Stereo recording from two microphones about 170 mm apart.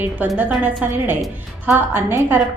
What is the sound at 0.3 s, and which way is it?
A woman's voice, 10° right (ahead or behind).